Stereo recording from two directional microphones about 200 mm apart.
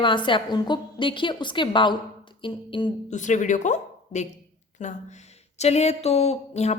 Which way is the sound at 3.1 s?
40° left (ahead or behind).